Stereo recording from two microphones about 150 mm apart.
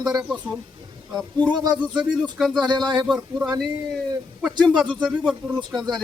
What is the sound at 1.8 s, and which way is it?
Speech, 5° right (ahead or behind).